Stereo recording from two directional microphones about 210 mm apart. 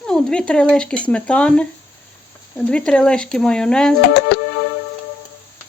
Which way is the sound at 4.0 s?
55° left (ahead or behind).